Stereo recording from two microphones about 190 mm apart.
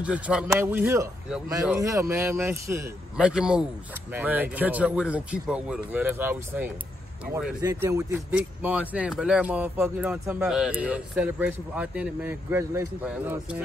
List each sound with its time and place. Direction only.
0.0 s a man's voice: 5° right (ahead or behind)
3.3 s a man's voice: 5° right (ahead or behind)
7.3 s speech: 55° right (ahead or behind)
7.6 s a man's voice: 15° right (ahead or behind)